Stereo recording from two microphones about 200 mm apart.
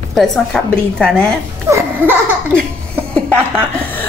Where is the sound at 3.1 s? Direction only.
5° left (ahead or behind).